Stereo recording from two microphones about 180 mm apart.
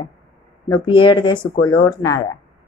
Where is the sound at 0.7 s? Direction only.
30° left (ahead or behind).